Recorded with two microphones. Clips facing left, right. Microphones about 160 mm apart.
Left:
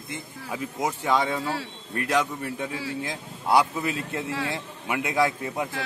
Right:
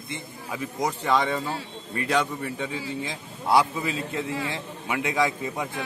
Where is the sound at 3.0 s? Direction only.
Centre (ahead or behind).